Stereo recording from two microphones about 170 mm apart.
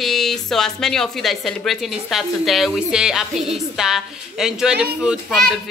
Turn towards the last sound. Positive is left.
turn(degrees=-5)  # may be behind; listen again after turning